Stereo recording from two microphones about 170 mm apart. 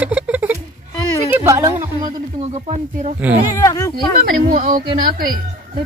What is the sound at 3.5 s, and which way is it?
Speech, 20° left (ahead or behind).